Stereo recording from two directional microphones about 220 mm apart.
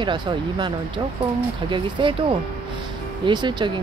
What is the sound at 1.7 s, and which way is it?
Speech, 20° right (ahead or behind).